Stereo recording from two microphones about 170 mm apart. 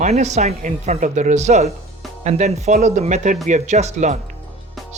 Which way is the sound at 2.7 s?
60° right (ahead or behind).